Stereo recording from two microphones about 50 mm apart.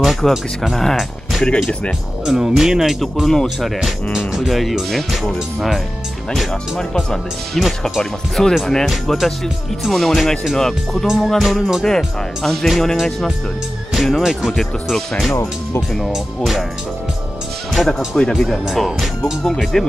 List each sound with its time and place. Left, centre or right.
0.0 s speech: centre
2.2 s speech: centre
3.0 s speech: centre
6.5 s speech: centre
11.4 s speech: centre
14.6 s speech: centre
17.8 s speech: centre
18.1 s speech: centre
18.7 s speech: centre
19.4 s speech: centre